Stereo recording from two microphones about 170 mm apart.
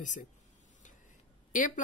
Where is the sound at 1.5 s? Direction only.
50° left (ahead or behind).